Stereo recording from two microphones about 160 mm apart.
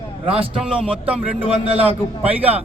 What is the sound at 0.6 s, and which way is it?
Speech, 5° right (ahead or behind).